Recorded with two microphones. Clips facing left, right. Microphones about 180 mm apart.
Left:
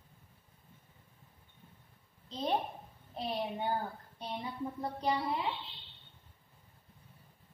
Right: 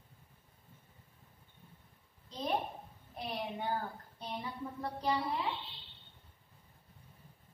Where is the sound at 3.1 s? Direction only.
25° left (ahead or behind).